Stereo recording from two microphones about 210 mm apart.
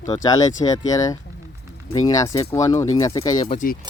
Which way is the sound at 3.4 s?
40° left (ahead or behind).